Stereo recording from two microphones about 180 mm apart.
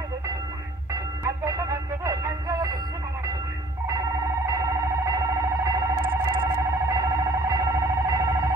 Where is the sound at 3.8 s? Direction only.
20° right (ahead or behind).